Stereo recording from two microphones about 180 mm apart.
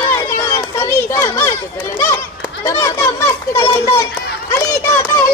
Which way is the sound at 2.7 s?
15° left (ahead or behind).